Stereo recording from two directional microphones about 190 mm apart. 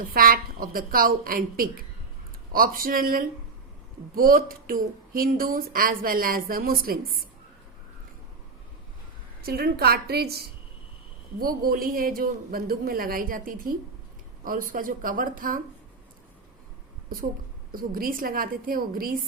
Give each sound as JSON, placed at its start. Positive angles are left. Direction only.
{"t": 0.0, "sound": "speech", "side_deg": -50}
{"t": 9.4, "sound": "a woman's voice", "side_deg": -55}
{"t": 17.7, "sound": "speech", "side_deg": -50}